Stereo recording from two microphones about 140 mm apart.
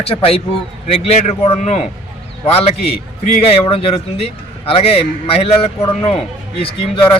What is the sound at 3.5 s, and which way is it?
Speech, 40° left (ahead or behind).